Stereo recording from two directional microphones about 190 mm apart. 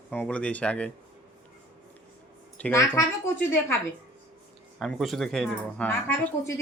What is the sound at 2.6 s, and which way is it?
Speech, 15° left (ahead or behind).